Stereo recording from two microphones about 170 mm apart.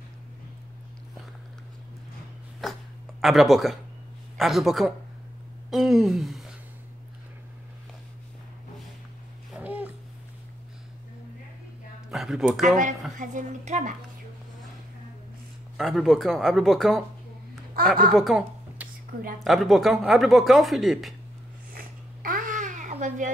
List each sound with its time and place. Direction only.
2.6 s a sound: centre (ahead or behind)
3.2 s speech: centre (ahead or behind)
9.5 s babbling: 10° right (ahead or behind)
12.1 s speech: centre (ahead or behind)
12.6 s a woman's voice: 50° right (ahead or behind)
15.8 s speech: centre (ahead or behind)
18.1 s a sound: centre (ahead or behind)
19.4 s speech: centre (ahead or behind)
21.7 s babbling: 55° right (ahead or behind)